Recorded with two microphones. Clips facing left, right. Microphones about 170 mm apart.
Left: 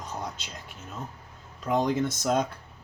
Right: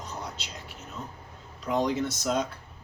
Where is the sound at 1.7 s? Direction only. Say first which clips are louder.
Left 1 dB; 50° left (ahead or behind).